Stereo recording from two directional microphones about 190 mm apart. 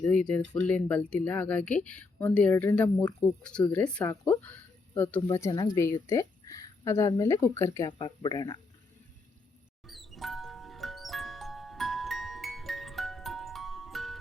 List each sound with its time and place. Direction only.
0.0 s speech: 5° left (ahead or behind); by 8.6 s 20° left (ahead or behind)
9.8 s music: centre (ahead or behind)